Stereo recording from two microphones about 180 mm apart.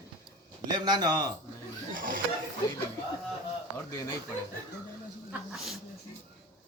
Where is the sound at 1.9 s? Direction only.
50° right (ahead or behind).